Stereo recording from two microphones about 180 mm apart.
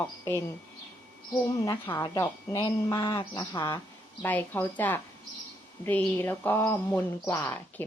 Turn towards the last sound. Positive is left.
turn(degrees=10)  # may be behind; listen again after turning